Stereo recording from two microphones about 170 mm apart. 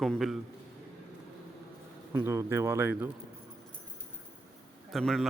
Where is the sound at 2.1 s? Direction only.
15° right (ahead or behind).